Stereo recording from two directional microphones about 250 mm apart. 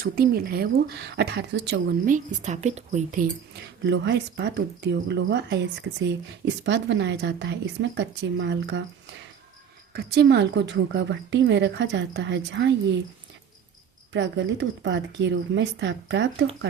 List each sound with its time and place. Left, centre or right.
0.0 s speech: right
9.9 s speech: right
14.1 s speech: right